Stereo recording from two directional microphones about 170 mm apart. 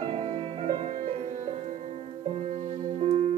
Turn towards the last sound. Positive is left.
turn(degrees=-40)  # may be behind; listen again after turning